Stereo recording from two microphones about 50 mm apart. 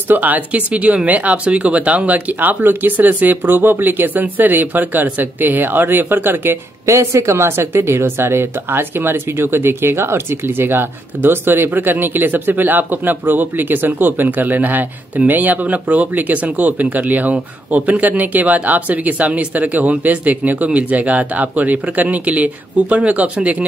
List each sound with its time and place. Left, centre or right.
0.1 s speech: right
6.9 s speech: right